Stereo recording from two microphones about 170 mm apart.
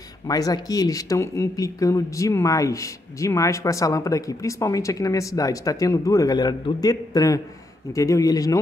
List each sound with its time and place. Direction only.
0.3 s speech: 20° left (ahead or behind)